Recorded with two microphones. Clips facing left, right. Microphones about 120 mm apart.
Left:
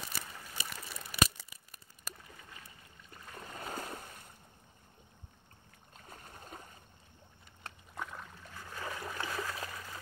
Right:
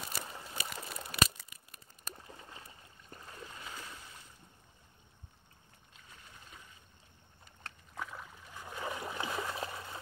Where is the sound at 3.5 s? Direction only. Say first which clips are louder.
Left 11 dB; 45° left (ahead or behind).